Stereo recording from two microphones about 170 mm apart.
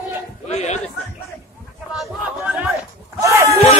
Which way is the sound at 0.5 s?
40° left (ahead or behind).